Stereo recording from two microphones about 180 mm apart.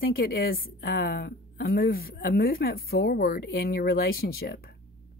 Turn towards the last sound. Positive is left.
turn(degrees=55)  # may be behind; listen again after turning